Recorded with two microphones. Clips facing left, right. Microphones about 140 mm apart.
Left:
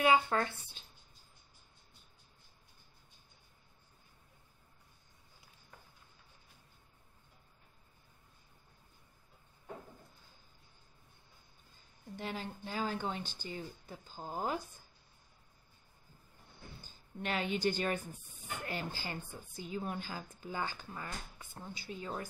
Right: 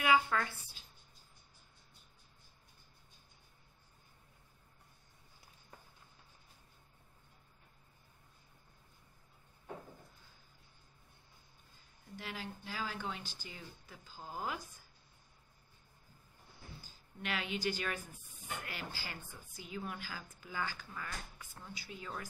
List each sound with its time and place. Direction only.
0.0 s speech: 30° left (ahead or behind)
12.2 s speech: 30° left (ahead or behind)
17.2 s a woman's voice: 35° left (ahead or behind)